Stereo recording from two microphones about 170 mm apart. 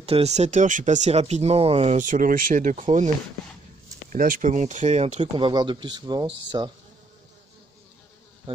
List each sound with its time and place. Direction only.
0.0 s speech: 40° right (ahead or behind)
4.1 s speech: 50° right (ahead or behind)
5.3 s speech: 25° right (ahead or behind)
8.5 s bee: 30° right (ahead or behind)